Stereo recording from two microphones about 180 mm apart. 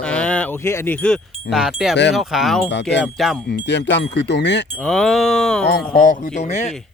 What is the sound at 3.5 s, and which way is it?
Wind chime, 75° left (ahead or behind).